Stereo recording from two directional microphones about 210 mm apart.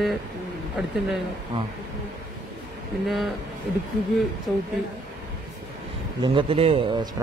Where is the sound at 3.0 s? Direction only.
Centre (ahead or behind).